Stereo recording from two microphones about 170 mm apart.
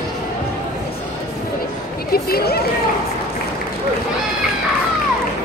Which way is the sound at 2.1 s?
65° left (ahead or behind).